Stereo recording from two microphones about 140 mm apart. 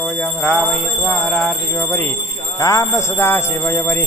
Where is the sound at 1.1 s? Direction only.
10° left (ahead or behind).